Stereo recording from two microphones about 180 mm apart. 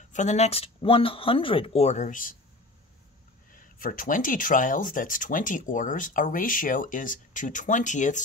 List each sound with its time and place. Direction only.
0.1 s speech: 40° left (ahead or behind)
3.5 s speech: 50° left (ahead or behind)